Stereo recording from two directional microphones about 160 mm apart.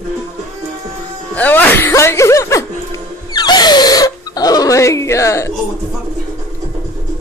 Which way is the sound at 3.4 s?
25° left (ahead or behind).